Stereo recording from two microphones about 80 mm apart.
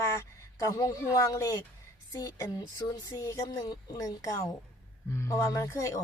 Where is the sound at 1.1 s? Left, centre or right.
Left.